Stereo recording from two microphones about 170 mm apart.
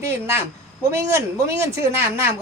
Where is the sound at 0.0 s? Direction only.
15° right (ahead or behind).